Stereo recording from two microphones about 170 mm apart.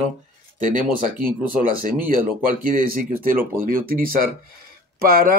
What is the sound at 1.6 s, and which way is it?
Speech, 55° right (ahead or behind).